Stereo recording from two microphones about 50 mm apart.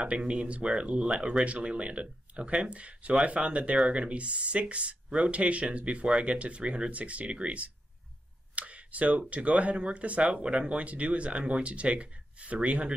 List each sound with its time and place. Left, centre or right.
0.0 s speech: right
8.5 s a sound: right
9.3 s speech: right